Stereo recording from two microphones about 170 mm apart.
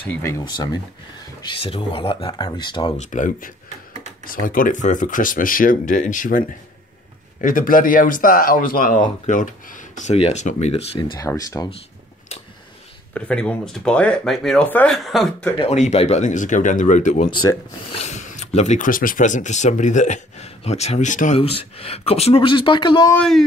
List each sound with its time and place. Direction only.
0.0 s speech: 15° left (ahead or behind)
1.5 s speech: 30° left (ahead or behind)
3.0 s speech: 50° left (ahead or behind)
3.6 s a sound: 40° right (ahead or behind)
4.2 s speech: 55° left (ahead or behind); by 11.7 s 20° left (ahead or behind)
13.1 s speech: 5° left (ahead or behind)
15.6 s speech: 40° left (ahead or behind)
21.4 s speech: 35° left (ahead or behind)
23.1 s speech: 5° left (ahead or behind)